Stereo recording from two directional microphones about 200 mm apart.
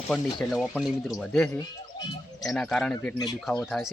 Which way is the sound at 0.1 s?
Centre (ahead or behind).